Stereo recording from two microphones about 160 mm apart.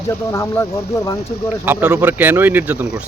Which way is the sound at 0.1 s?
15° left (ahead or behind).